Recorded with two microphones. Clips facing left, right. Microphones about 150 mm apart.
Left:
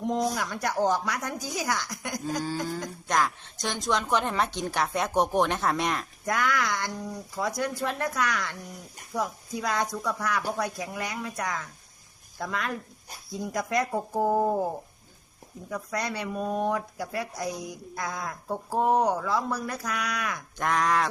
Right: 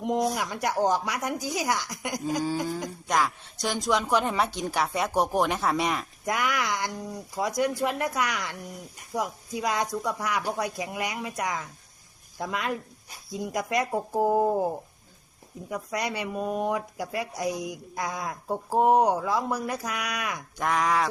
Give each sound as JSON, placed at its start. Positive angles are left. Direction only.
{"t": 0.0, "sound": "a woman's voice", "side_deg": -15}
{"t": 6.2, "sound": "speech", "side_deg": -15}
{"t": 15.7, "sound": "speech", "side_deg": -15}
{"t": 20.6, "sound": "a woman's voice", "side_deg": -5}